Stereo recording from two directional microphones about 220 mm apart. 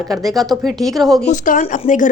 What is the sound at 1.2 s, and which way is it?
Speech, 35° left (ahead or behind).